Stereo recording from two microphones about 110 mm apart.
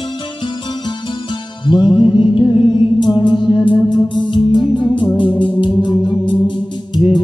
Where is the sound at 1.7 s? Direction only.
50° left (ahead or behind).